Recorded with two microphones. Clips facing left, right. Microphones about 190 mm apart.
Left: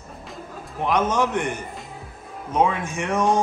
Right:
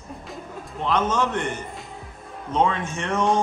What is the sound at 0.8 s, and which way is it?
Speech, 10° left (ahead or behind).